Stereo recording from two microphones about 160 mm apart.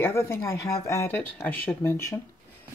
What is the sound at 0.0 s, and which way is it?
Speech, 15° left (ahead or behind).